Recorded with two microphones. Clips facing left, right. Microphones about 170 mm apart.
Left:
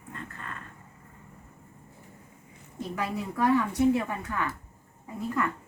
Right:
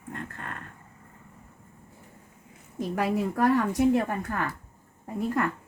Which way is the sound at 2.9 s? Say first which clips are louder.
Right 6 dB; 45° right (ahead or behind).